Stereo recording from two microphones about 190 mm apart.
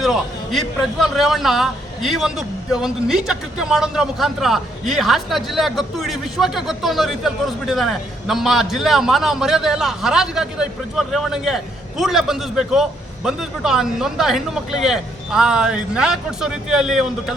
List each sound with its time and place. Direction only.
0.0 s a man's voice: centre (ahead or behind)